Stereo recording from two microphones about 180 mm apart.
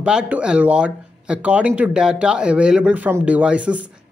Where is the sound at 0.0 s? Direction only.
5° right (ahead or behind).